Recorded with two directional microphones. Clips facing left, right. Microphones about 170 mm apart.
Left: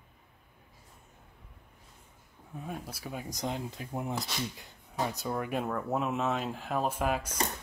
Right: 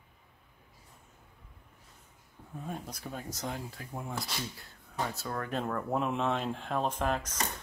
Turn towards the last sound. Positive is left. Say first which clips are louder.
# left 1 dB
turn(degrees=10)  # may be behind; listen again after turning